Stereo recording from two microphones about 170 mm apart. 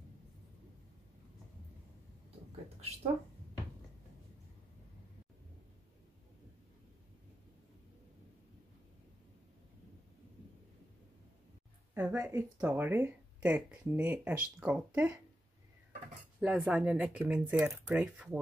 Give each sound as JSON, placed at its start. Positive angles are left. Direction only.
{"t": 2.8, "sound": "a woman's voice", "side_deg": -35}
{"t": 11.9, "sound": "speech", "side_deg": -15}
{"t": 16.3, "sound": "speech", "side_deg": -5}